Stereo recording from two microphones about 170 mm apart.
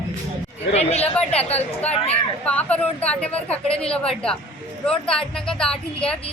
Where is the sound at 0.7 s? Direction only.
40° left (ahead or behind).